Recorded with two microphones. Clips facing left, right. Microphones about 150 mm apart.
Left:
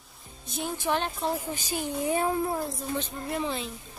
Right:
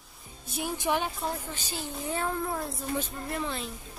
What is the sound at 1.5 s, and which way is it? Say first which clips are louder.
A woman's voice: left 6 dB; 15° left (ahead or behind).